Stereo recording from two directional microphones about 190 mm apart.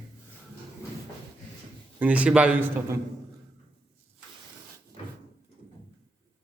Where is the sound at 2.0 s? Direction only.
5° right (ahead or behind).